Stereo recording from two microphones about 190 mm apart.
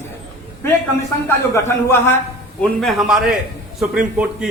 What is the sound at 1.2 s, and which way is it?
Speech, 15° left (ahead or behind).